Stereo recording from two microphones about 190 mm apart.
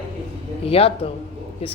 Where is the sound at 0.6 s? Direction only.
30° left (ahead or behind).